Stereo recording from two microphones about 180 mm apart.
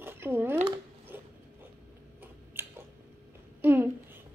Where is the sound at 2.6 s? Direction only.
10° right (ahead or behind).